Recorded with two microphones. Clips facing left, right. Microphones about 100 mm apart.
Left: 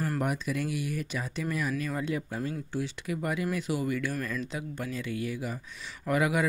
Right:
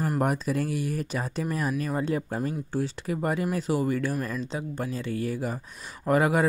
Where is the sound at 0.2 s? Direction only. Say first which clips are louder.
Right 4 dB; 40° right (ahead or behind).